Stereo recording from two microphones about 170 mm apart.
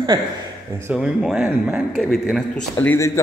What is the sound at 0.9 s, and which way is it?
Speech, 5° right (ahead or behind).